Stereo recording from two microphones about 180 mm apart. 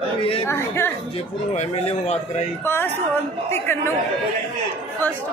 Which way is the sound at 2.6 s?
10° left (ahead or behind).